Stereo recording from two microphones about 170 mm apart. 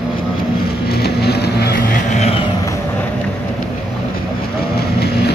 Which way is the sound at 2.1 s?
35° left (ahead or behind).